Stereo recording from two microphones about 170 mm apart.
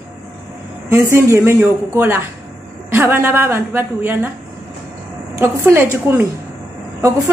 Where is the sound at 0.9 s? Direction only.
15° right (ahead or behind).